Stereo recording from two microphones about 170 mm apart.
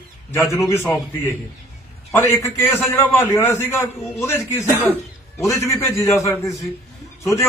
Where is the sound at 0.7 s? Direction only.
15° left (ahead or behind).